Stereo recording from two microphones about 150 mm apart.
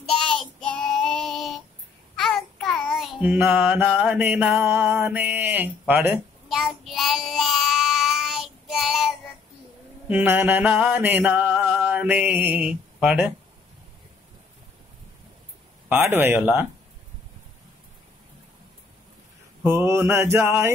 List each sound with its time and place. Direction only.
0.1 s child singing: 5° left (ahead or behind)
10.0 s mantra: 10° right (ahead or behind)
16.1 s mantra: 15° right (ahead or behind)
19.6 s mantra: 15° right (ahead or behind)